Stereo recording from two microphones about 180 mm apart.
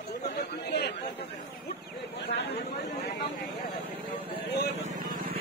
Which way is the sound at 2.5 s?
65° left (ahead or behind).